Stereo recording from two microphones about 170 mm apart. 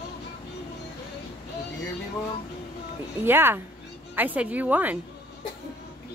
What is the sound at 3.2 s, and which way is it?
Speech, 15° right (ahead or behind).